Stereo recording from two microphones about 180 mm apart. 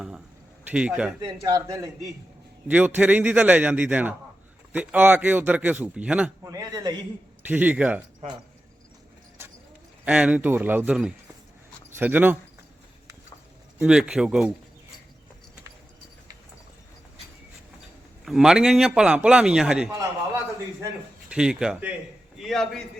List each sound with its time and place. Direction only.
0.7 s a man's voice: 5° right (ahead or behind)
1.2 s a man's voice: 20° right (ahead or behind)
6.4 s a man's voice: 20° right (ahead or behind)
7.4 s a man's voice: 10° right (ahead or behind)
8.2 s speech: 40° right (ahead or behind)
9.4 s clip-clop: 15° right (ahead or behind)
10.1 s a man's voice: 5° right (ahead or behind)
13.7 s a man's voice: 5° right (ahead or behind)
18.3 s a man's voice: 5° right (ahead or behind)
21.2 s a man's voice: 5° right (ahead or behind)